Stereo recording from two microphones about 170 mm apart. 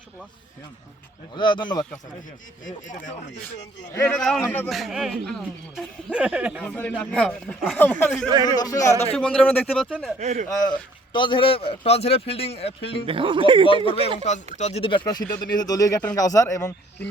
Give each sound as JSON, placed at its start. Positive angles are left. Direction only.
{"t": 1.3, "sound": "speech", "side_deg": 25}
{"t": 3.9, "sound": "a man's voice", "side_deg": 15}
{"t": 4.2, "sound": "speech", "side_deg": 0}
{"t": 6.7, "sound": "speech", "side_deg": 10}
{"t": 8.4, "sound": "speech", "side_deg": 20}
{"t": 9.1, "sound": "speech", "side_deg": 5}
{"t": 10.2, "sound": "speech", "side_deg": -45}
{"t": 10.5, "sound": "speech", "side_deg": 25}
{"t": 13.1, "sound": "speech", "side_deg": -30}
{"t": 13.8, "sound": "speech", "side_deg": 35}